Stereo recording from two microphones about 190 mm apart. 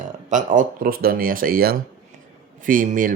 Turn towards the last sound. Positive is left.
turn(degrees=-45)  # may be behind; listen again after turning